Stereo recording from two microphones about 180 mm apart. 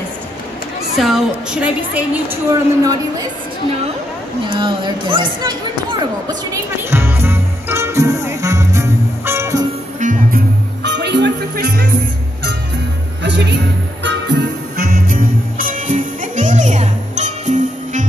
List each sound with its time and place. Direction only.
0.9 s a woman's voice: centre (ahead or behind)
2.5 s a woman's voice: 20° right (ahead or behind)
4.5 s a sound: 25° right (ahead or behind)
9.9 s music: 45° right (ahead or behind)
10.8 s music: 75° right (ahead or behind)
13.2 s music: 75° right (ahead or behind)
14.8 s music: 50° right (ahead or behind)